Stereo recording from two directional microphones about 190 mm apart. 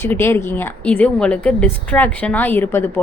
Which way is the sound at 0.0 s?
10° left (ahead or behind).